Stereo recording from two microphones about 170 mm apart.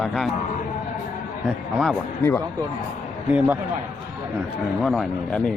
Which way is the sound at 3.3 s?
10° right (ahead or behind).